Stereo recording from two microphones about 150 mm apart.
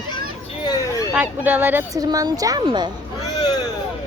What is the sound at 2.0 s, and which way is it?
Speech, 25° right (ahead or behind).